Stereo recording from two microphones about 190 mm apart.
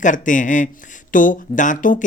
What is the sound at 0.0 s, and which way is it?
Speech, 40° left (ahead or behind).